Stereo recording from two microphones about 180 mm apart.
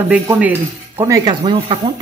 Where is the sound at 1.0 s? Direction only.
20° right (ahead or behind).